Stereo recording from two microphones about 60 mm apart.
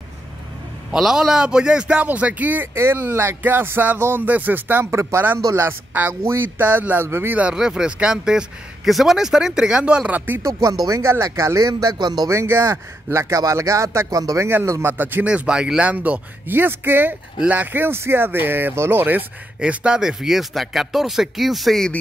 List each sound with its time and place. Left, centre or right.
0.9 s speech: centre
2.0 s speech: right
2.7 s speech: right
5.4 s speech: right
6.2 s speech: right
7.5 s speech: centre
10.4 s speech: right
11.0 s speech: right
12.3 s speech: right
13.4 s speech: right
14.9 s speech: right
15.2 s speech: centre
16.4 s speech: right
19.6 s speech: centre